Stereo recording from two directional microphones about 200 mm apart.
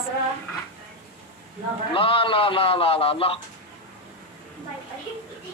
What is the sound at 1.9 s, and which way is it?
A man's voice, 25° left (ahead or behind).